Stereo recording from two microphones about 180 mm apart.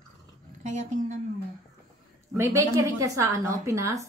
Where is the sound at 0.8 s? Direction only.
40° right (ahead or behind).